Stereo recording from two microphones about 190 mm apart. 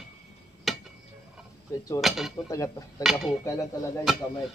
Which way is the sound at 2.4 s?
15° left (ahead or behind).